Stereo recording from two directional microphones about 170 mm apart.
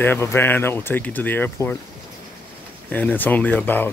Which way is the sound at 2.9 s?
10° left (ahead or behind).